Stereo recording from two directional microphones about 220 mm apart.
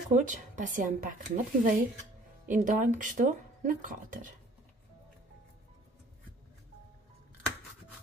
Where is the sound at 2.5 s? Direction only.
35° right (ahead or behind).